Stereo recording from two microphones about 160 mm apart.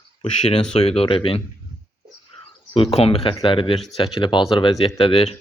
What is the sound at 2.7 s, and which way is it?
Speech, 35° left (ahead or behind).